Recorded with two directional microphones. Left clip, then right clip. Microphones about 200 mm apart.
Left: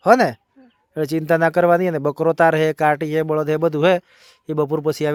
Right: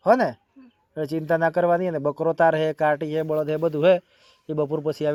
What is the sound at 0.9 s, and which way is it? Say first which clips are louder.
Speech: left 5 dB; 50° left (ahead or behind).